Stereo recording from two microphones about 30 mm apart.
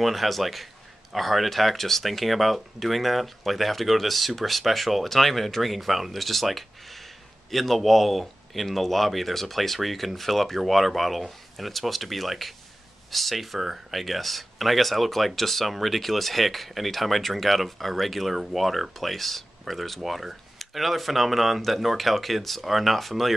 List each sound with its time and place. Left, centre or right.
0.0 s speech: centre